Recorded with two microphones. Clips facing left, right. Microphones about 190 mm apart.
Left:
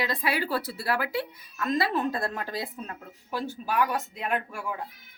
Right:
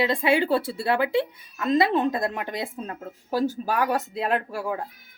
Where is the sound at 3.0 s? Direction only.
40° right (ahead or behind).